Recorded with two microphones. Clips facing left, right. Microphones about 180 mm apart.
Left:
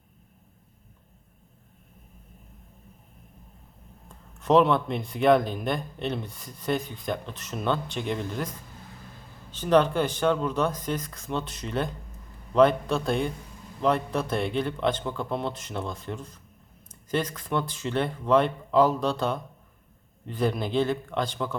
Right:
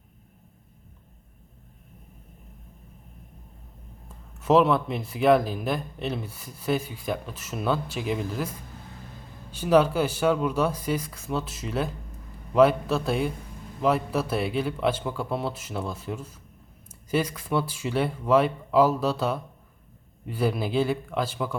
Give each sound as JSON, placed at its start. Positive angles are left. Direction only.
{"t": 4.4, "sound": "speech", "side_deg": -5}